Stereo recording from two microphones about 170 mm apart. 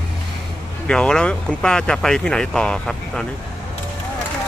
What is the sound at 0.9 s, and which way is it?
Speech, 5° left (ahead or behind).